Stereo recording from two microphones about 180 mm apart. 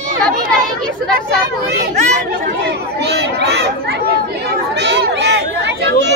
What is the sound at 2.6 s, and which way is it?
Chatter, 65° right (ahead or behind).